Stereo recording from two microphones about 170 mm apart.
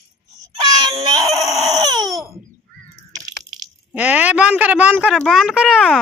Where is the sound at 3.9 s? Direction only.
10° right (ahead or behind).